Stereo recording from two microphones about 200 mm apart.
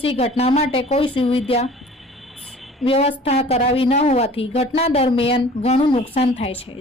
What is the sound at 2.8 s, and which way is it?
A woman's voice, 30° left (ahead or behind).